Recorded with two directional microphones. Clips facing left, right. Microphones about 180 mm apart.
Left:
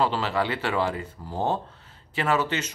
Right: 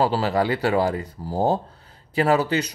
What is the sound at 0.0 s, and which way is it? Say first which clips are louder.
Speech: right 4 dB; 40° right (ahead or behind).